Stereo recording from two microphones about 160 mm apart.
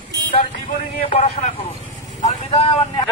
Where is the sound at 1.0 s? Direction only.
40° left (ahead or behind).